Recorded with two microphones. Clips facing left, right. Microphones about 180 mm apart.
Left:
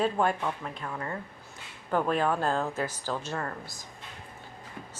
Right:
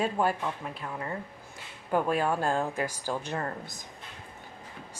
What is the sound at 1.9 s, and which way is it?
Speech, 10° right (ahead or behind).